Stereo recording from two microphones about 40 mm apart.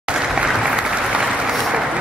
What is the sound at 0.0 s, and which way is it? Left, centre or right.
Applause, centre.